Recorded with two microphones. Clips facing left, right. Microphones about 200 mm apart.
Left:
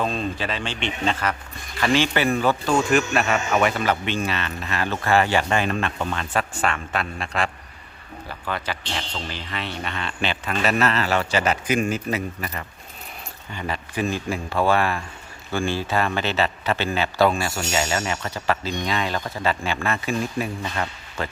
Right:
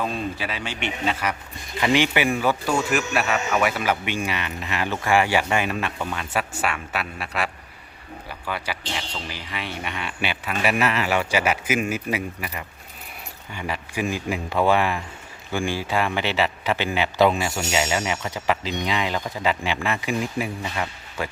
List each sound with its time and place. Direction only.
0.0 s speech: 10° right (ahead or behind)